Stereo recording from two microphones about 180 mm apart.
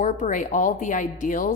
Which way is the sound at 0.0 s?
45° left (ahead or behind).